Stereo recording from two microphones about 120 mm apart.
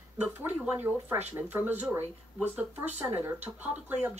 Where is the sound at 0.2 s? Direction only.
15° right (ahead or behind).